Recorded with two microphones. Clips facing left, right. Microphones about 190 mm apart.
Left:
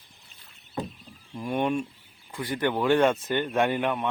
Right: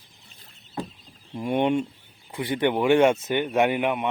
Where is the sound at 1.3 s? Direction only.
20° right (ahead or behind).